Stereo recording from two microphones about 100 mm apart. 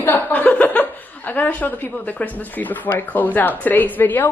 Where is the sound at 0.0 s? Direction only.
20° left (ahead or behind).